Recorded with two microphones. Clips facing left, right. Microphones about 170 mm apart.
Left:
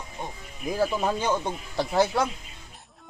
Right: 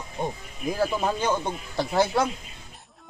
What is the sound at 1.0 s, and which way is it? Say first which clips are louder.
A man's voice: even; centre (ahead or behind).